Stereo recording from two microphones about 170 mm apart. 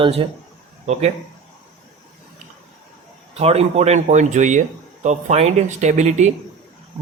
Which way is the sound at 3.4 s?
35° right (ahead or behind).